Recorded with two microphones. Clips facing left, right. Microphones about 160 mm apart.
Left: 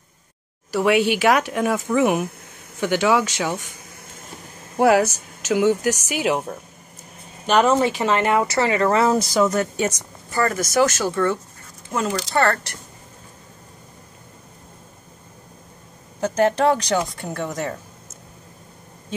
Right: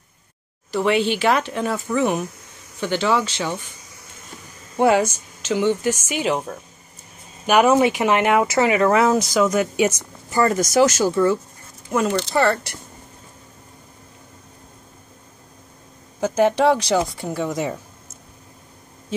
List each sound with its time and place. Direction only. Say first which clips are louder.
0.7 s speech: left 1 dB; 10° left (ahead or behind)
4.7 s speech: left 1 dB; 5° left (ahead or behind)
7.4 s speech: right 2 dB; 10° right (ahead or behind)
9.1 s speech: right 1 dB; centre (ahead or behind)
10.4 s speech: right 3 dB; 20° right (ahead or behind)
16.2 s speech: right 1 dB; 10° right (ahead or behind)